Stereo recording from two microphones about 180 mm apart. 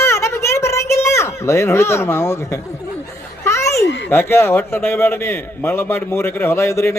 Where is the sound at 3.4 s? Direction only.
15° left (ahead or behind).